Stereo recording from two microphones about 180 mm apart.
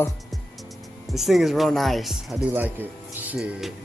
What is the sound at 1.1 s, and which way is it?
Speech, centre (ahead or behind).